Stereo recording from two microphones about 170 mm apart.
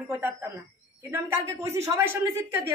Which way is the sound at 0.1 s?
15° right (ahead or behind).